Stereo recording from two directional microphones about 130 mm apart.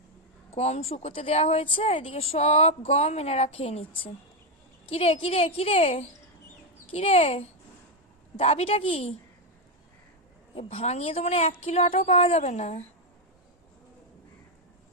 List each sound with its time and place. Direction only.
0.5 s speech: 55° left (ahead or behind)
10.5 s a woman's voice: 50° left (ahead or behind)